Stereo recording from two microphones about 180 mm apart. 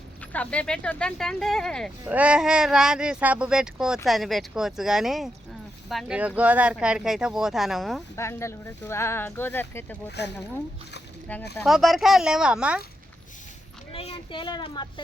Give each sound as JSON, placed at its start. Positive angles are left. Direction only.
{"t": 0.3, "sound": "speech", "side_deg": 5}
{"t": 2.0, "sound": "speech", "side_deg": -5}
{"t": 8.1, "sound": "speech", "side_deg": 15}
{"t": 11.6, "sound": "speech", "side_deg": 0}
{"t": 13.9, "sound": "a child's voice", "side_deg": 30}